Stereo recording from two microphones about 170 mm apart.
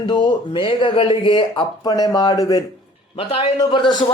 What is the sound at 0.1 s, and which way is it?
Speech, 25° left (ahead or behind).